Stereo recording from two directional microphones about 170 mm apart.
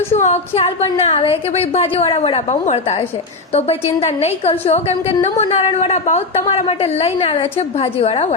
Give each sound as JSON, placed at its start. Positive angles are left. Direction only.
{"t": 0.1, "sound": "a woman's voice", "side_deg": 40}